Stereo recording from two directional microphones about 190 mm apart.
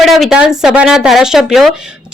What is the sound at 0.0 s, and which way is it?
A woman's voice, centre (ahead or behind).